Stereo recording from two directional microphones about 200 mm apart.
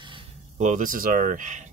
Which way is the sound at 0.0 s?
25° right (ahead or behind).